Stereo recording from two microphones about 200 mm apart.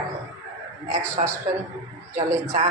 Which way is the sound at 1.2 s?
35° right (ahead or behind).